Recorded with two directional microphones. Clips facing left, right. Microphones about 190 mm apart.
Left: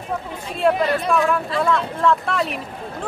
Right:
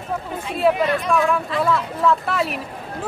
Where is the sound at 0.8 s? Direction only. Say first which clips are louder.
Even; 35° left (ahead or behind).